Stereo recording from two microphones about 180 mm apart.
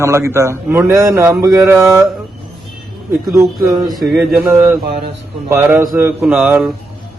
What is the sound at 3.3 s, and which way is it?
Speech, 15° right (ahead or behind).